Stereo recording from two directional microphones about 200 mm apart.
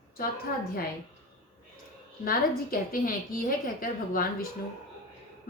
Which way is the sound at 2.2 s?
45° left (ahead or behind).